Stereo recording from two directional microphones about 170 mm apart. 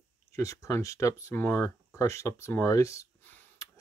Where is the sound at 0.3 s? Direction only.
20° left (ahead or behind).